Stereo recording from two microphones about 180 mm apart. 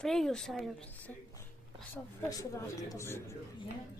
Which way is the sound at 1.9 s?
20° left (ahead or behind).